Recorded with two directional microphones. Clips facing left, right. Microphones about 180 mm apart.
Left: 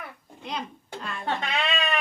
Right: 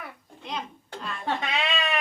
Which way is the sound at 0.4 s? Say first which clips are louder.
Left 1 dB; centre (ahead or behind).